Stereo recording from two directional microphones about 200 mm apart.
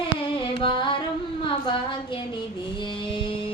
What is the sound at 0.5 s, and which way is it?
Carnatic music, 25° left (ahead or behind).